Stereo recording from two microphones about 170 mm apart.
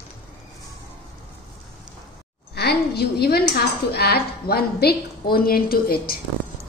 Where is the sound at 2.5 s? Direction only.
70° left (ahead or behind).